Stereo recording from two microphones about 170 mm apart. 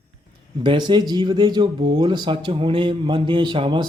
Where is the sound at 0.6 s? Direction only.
25° right (ahead or behind).